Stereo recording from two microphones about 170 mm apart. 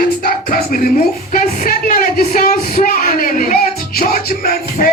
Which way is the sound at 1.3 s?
50° left (ahead or behind).